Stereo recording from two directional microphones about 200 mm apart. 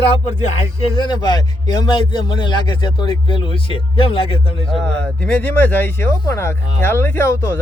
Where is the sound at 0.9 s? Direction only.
20° left (ahead or behind).